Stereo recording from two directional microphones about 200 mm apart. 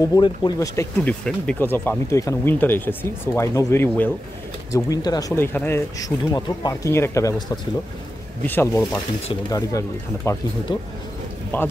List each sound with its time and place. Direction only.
0.1 s speech: 20° left (ahead or behind)
8.5 s speech: 10° left (ahead or behind)